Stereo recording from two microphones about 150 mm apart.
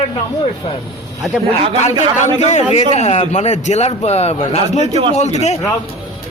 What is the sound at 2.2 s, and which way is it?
A man's voice, 50° left (ahead or behind).